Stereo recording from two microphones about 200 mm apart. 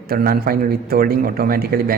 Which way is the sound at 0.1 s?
50° right (ahead or behind).